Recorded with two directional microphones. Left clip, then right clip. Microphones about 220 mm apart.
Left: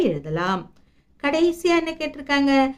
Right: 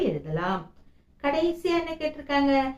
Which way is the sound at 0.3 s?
50° left (ahead or behind).